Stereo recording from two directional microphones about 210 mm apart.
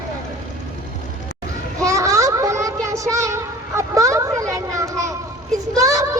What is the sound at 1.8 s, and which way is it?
Child singing, 15° right (ahead or behind).